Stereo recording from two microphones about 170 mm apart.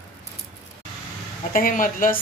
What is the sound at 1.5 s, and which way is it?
Speech, 55° left (ahead or behind).